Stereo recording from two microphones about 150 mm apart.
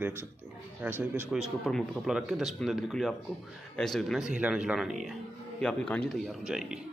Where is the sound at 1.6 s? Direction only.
Centre (ahead or behind).